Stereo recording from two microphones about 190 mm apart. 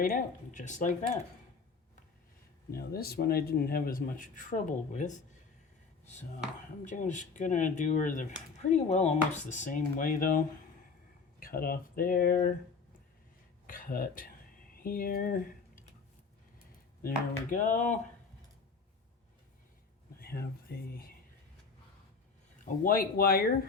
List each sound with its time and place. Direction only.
0.0 s speech: 45° left (ahead or behind)
2.7 s speech: 55° left (ahead or behind)
6.8 s speech: 40° left (ahead or behind)
13.7 s speech: 45° left (ahead or behind)
17.0 s speech: 45° left (ahead or behind)
20.1 s speech: 55° left (ahead or behind)
22.6 s speech: 45° left (ahead or behind)